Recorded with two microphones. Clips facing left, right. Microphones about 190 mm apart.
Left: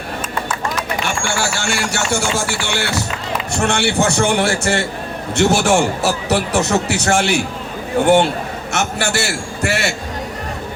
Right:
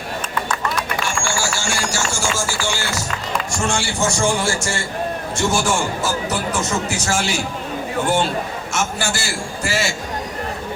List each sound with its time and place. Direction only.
1.0 s a man's voice: 60° left (ahead or behind)